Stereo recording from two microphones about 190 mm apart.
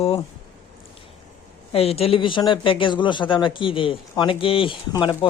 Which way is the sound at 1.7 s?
30° left (ahead or behind).